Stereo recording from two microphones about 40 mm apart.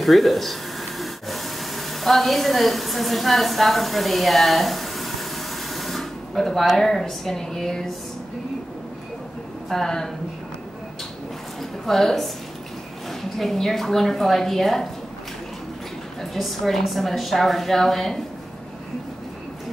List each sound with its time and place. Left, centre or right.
0.0 s a sound: centre
6.8 s a woman's voice: centre
9.7 s a woman's voice: centre
11.8 s a woman's voice: centre
16.3 s a woman's voice: centre